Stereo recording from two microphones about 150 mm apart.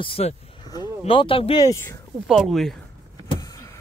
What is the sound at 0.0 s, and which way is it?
Speech, 40° left (ahead or behind).